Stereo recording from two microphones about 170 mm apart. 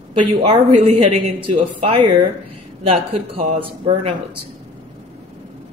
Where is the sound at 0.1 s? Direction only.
35° right (ahead or behind).